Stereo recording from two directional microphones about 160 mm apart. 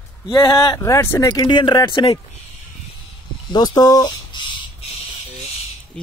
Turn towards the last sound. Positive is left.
turn(degrees=5)  # may be behind; listen again after turning